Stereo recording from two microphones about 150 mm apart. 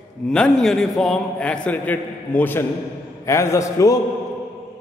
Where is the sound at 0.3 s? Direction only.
5° left (ahead or behind); by 4.0 s 20° left (ahead or behind).